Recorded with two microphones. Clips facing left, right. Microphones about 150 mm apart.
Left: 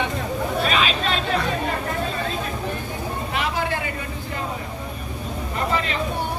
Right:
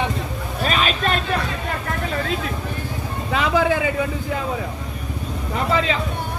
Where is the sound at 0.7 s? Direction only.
45° right (ahead or behind).